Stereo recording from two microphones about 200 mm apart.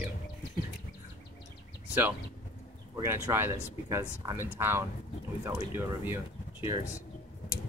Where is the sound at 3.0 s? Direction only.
10° right (ahead or behind).